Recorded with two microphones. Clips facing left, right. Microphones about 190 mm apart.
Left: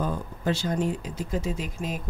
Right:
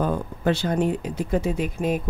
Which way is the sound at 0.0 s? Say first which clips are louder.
Right 5 dB; 60° right (ahead or behind).